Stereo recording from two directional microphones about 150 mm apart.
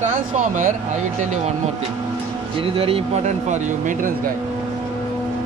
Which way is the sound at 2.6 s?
40° right (ahead or behind).